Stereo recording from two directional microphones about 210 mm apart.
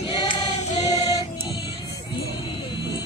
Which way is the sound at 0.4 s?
35° left (ahead or behind).